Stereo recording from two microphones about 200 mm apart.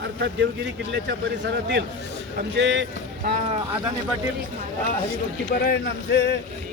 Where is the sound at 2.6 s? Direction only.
65° right (ahead or behind).